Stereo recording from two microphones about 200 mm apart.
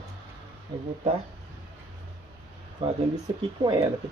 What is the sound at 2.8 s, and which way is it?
Speech, 25° right (ahead or behind).